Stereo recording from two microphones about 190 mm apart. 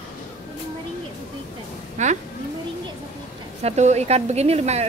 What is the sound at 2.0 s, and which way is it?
Speech, 40° right (ahead or behind).